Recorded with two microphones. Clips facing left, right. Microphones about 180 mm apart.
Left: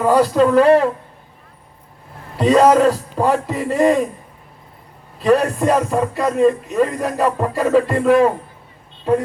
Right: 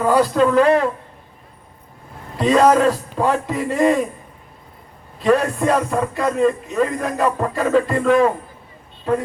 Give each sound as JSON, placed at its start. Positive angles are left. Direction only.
{"t": 0.2, "sound": "speech", "side_deg": 5}
{"t": 0.5, "sound": "a woman's voice", "side_deg": 35}
{"t": 2.3, "sound": "a man's voice", "side_deg": 5}
{"t": 5.2, "sound": "speech", "side_deg": 5}